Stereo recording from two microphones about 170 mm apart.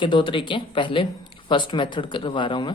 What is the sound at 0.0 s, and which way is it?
Speech, 30° left (ahead or behind).